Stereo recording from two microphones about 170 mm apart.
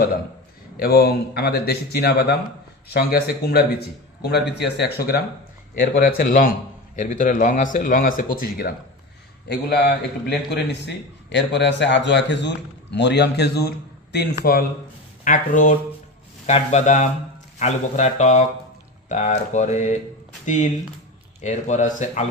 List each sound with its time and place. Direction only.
0.8 s a man's voice: 65° left (ahead or behind)
6.0 s speech: 60° left (ahead or behind)
9.5 s a man's voice: 75° left (ahead or behind)
15.2 s speech: 50° left (ahead or behind)